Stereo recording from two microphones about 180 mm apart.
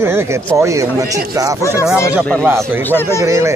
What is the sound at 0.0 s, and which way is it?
Speech, 15° right (ahead or behind).